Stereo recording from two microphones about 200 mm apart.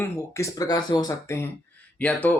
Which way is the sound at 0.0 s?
15° left (ahead or behind).